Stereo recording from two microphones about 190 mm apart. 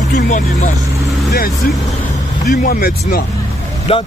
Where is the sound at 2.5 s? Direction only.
45° left (ahead or behind).